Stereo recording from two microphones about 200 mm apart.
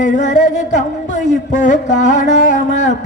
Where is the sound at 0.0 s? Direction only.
40° left (ahead or behind).